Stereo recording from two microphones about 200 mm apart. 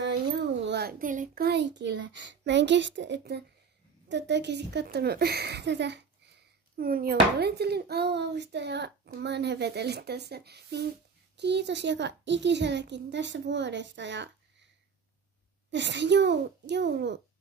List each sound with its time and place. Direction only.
0.6 s speech: 55° right (ahead or behind)
6.8 s speech: 50° right (ahead or behind)
15.7 s speech: 60° right (ahead or behind)